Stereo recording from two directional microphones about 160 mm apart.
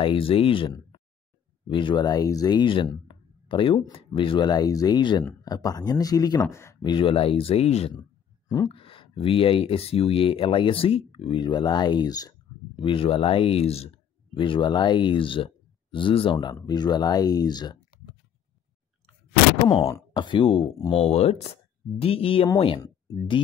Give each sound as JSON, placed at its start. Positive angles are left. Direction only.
{"t": 0.0, "sound": "speech", "side_deg": 35}
{"t": 6.8, "sound": "speech", "side_deg": 30}
{"t": 19.7, "sound": "speech", "side_deg": 35}